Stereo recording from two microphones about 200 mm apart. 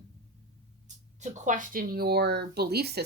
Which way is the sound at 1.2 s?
35° right (ahead or behind).